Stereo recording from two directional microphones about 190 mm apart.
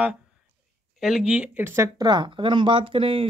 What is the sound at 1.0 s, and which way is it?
Speech, 5° right (ahead or behind).